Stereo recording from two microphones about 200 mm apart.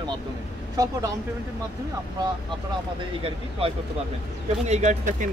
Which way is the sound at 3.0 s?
30° right (ahead or behind).